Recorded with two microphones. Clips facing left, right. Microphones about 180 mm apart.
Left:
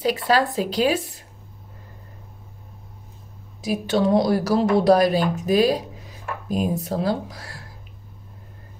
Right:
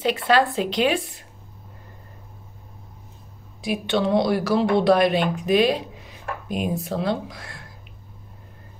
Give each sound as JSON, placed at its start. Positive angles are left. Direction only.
{"t": 0.2, "sound": "a woman's voice", "side_deg": 40}
{"t": 3.6, "sound": "a woman's voice", "side_deg": 40}